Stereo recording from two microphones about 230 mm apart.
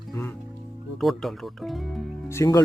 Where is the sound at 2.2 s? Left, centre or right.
Centre.